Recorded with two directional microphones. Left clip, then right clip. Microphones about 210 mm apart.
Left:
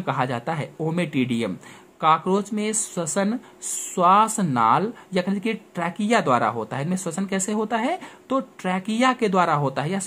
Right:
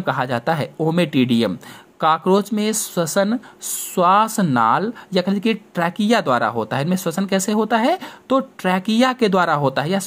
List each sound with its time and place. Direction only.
0.0 s speech: 25° right (ahead or behind)